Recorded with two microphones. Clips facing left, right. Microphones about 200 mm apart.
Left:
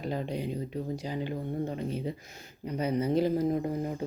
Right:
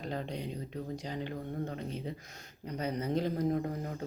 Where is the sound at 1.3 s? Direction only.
20° left (ahead or behind).